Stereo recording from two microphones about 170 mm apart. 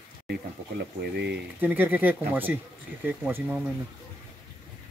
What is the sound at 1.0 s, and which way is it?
Speech, 75° right (ahead or behind).